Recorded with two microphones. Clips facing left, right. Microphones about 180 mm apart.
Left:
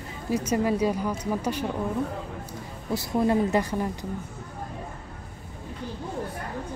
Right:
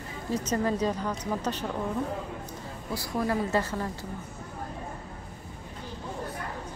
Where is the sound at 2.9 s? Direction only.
20° left (ahead or behind).